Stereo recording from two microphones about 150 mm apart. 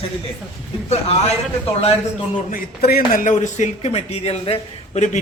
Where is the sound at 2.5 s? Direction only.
90° left.